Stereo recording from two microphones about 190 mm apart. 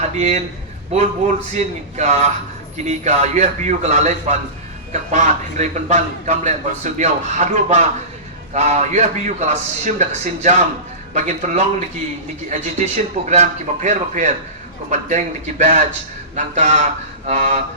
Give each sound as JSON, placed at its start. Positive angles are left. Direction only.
{"t": 0.2, "sound": "a man's voice", "side_deg": -35}